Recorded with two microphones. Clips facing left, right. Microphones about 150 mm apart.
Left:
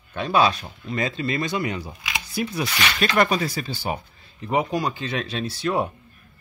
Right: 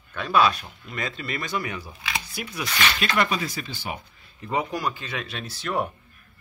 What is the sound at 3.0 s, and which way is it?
Speech, 40° left (ahead or behind).